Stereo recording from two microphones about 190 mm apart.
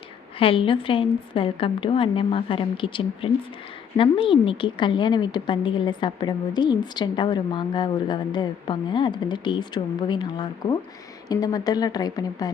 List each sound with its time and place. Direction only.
0.3 s a woman's voice: 30° left (ahead or behind)